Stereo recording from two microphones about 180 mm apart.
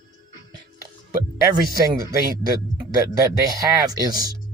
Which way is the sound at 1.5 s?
20° right (ahead or behind).